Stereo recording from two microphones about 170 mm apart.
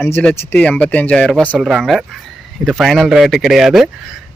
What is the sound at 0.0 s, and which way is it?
A man's voice, 10° left (ahead or behind).